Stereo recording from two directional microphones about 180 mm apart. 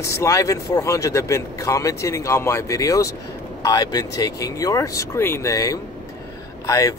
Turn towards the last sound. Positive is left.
turn(degrees=20)  # may be behind; listen again after turning